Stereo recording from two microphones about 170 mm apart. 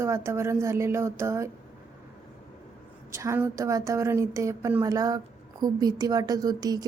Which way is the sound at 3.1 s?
15° right (ahead or behind).